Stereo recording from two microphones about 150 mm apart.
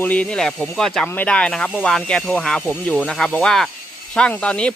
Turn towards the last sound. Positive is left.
turn(degrees=5)  # may be behind; listen again after turning